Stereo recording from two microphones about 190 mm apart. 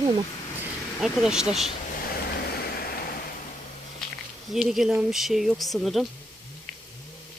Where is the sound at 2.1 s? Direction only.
55° left (ahead or behind).